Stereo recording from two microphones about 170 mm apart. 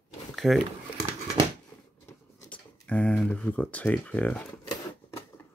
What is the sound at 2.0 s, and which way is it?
Speech, 10° left (ahead or behind).